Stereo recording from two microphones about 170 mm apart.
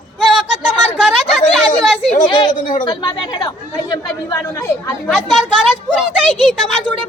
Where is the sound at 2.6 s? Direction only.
50° left (ahead or behind).